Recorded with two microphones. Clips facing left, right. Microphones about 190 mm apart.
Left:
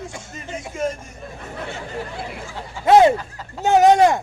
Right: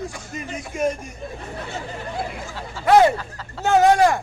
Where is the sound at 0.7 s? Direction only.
15° right (ahead or behind).